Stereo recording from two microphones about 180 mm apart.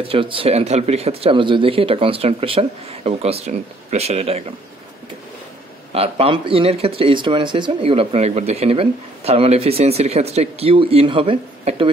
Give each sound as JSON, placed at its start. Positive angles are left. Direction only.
{"t": 0.0, "sound": "speech", "side_deg": -30}
{"t": 5.9, "sound": "speech", "side_deg": -30}